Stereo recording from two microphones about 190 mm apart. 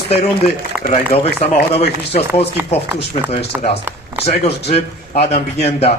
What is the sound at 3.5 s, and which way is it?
Speech, 5° right (ahead or behind).